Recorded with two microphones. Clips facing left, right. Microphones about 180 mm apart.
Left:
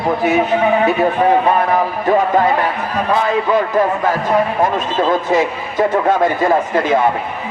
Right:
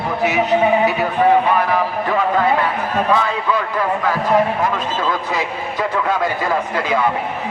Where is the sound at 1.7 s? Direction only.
40° left (ahead or behind).